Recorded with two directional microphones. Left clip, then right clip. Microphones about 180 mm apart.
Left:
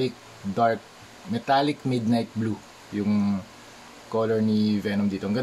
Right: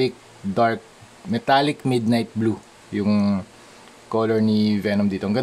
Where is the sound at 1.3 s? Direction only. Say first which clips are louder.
Right 4 dB; 40° right (ahead or behind).